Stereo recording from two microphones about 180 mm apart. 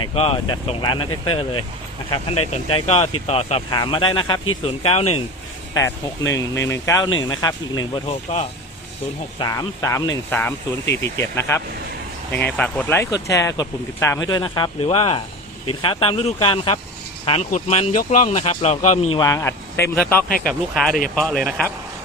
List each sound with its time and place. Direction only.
0.0 s speech: 35° left (ahead or behind)
5.7 s speech: 20° left (ahead or behind)
9.4 s speech: 20° left (ahead or behind); by 19.2 s 40° left (ahead or behind)
19.2 s speech: 20° left (ahead or behind)
20.2 s speech: 50° left (ahead or behind)
20.5 s speech: centre (ahead or behind)